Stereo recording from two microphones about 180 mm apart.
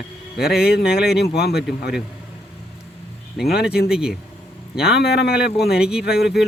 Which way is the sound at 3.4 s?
65° left (ahead or behind).